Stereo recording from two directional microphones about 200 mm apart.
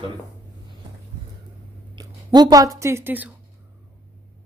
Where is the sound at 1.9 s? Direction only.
20° right (ahead or behind).